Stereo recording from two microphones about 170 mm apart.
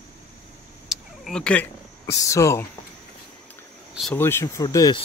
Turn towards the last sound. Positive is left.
turn(degrees=25)  # may be behind; listen again after turning